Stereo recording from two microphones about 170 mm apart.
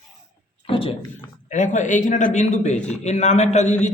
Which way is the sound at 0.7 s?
30° left (ahead or behind).